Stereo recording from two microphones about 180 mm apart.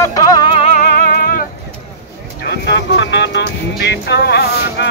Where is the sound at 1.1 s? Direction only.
55° left (ahead or behind).